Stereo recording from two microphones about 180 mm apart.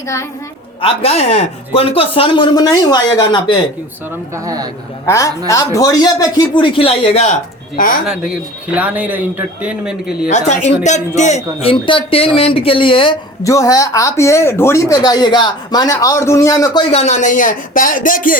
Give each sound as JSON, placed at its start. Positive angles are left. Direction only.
{"t": 0.8, "sound": "speech", "side_deg": 30}
{"t": 4.4, "sound": "speech", "side_deg": -20}
{"t": 5.0, "sound": "a woman's voice", "side_deg": 15}
{"t": 8.0, "sound": "speech", "side_deg": -5}
{"t": 10.2, "sound": "a man's voice", "side_deg": 40}
{"t": 13.4, "sound": "speech", "side_deg": 20}
{"t": 16.9, "sound": "a man's voice", "side_deg": 35}